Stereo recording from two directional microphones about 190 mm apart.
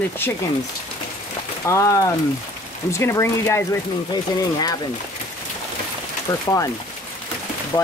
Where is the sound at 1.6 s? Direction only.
15° left (ahead or behind).